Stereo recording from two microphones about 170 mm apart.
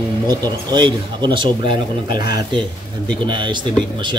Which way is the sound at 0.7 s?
25° right (ahead or behind).